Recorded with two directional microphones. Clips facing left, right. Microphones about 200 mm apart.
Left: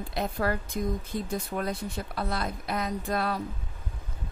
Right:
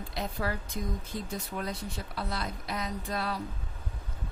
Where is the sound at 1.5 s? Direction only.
50° left (ahead or behind).